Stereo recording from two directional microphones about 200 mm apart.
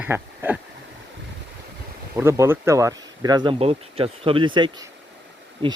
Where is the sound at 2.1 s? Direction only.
15° right (ahead or behind).